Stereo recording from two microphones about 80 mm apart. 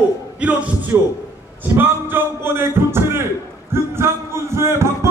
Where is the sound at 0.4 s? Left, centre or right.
Centre.